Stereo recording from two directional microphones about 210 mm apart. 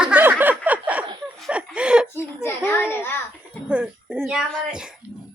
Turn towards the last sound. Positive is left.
turn(degrees=-5)  # may be behind; listen again after turning